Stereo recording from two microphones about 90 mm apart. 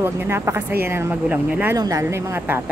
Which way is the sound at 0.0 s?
25° right (ahead or behind).